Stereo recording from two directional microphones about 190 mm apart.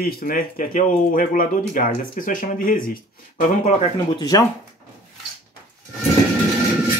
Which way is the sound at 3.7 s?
30° left (ahead or behind).